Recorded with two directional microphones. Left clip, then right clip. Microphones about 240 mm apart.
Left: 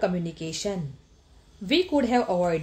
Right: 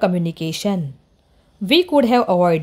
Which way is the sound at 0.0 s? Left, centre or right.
Right.